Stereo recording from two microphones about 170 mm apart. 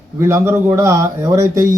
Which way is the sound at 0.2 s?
15° right (ahead or behind).